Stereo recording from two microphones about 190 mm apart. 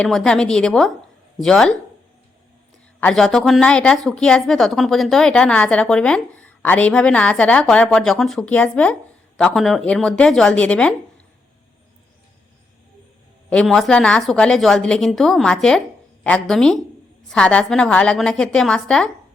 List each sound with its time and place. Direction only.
0.0 s a woman's voice: 5° left (ahead or behind)
3.0 s a woman's voice: 5° left (ahead or behind)
13.5 s a woman's voice: centre (ahead or behind)